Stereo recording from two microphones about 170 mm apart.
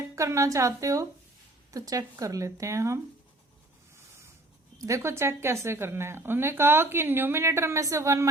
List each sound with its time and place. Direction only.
0.2 s speech: 20° right (ahead or behind)
4.8 s a woman's voice: 20° right (ahead or behind)